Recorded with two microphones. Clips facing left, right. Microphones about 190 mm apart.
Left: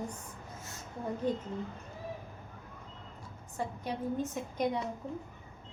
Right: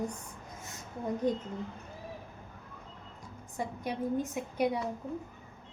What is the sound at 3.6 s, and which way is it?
A woman's voice, 10° right (ahead or behind).